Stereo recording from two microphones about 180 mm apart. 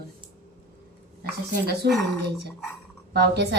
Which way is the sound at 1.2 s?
60° right (ahead or behind).